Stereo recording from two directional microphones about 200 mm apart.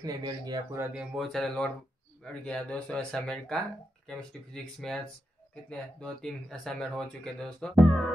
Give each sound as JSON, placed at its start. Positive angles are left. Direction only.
{"t": 0.0, "sound": "speech", "side_deg": -20}
{"t": 0.9, "sound": "speech", "side_deg": 0}